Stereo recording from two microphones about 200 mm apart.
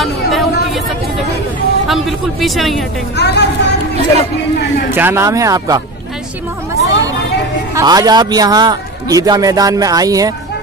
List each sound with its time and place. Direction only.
0.0 s a sound: centre (ahead or behind)
1.9 s speech: centre (ahead or behind)
3.2 s speech: 55° left (ahead or behind)
4.9 s speech: 10° right (ahead or behind)
6.7 s hubbub: 15° right (ahead or behind)
7.7 s a man's voice: 20° right (ahead or behind)